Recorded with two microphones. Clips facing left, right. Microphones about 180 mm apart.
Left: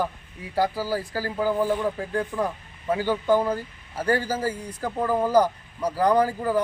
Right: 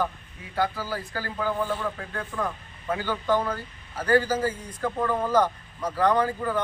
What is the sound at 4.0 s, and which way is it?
Speech, 30° left (ahead or behind).